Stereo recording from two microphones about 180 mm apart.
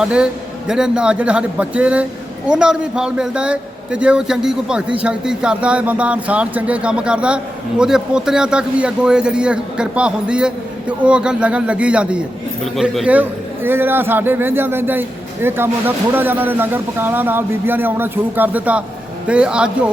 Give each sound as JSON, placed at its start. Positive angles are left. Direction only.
{"t": 0.0, "sound": "a man's voice", "side_deg": -5}